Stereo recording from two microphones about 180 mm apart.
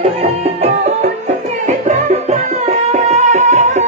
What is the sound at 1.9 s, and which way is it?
Music, 40° right (ahead or behind).